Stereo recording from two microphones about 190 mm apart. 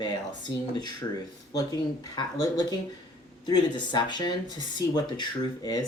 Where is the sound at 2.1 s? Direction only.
20° left (ahead or behind).